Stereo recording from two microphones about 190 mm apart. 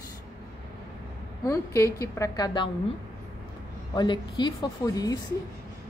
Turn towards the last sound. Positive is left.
turn(degrees=20)  # may be behind; listen again after turning